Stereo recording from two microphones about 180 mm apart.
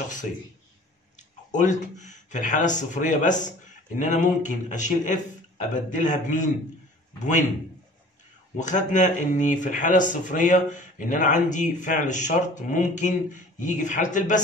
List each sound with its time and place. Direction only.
1.5 s speech: 40° left (ahead or behind)
8.5 s speech: 45° left (ahead or behind)